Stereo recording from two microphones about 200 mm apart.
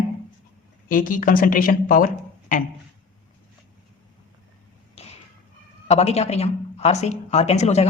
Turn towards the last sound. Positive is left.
turn(degrees=35)  # may be behind; listen again after turning